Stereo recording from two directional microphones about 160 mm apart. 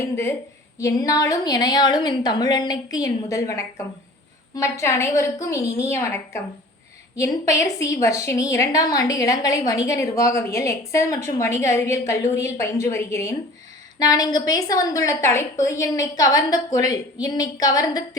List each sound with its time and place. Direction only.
0.8 s a woman's voice: 20° left (ahead or behind)